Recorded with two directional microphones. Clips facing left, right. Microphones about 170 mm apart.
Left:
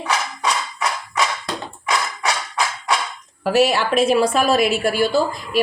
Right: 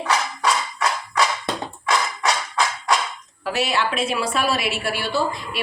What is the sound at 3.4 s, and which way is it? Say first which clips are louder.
A woman's voice: left 6 dB; 45° left (ahead or behind).